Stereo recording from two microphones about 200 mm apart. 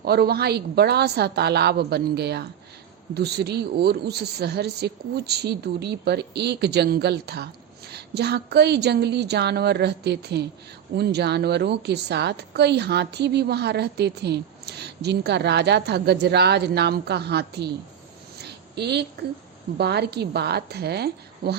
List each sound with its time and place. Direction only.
0.0 s a woman's voice: 50° right (ahead or behind)
18.4 s a sound: 55° right (ahead or behind)
19.8 s a woman's voice: 55° right (ahead or behind)